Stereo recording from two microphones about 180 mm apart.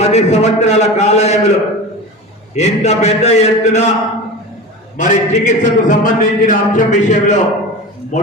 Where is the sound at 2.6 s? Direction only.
35° left (ahead or behind).